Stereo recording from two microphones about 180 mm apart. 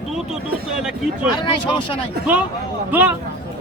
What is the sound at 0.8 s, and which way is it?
Speech, 5° right (ahead or behind).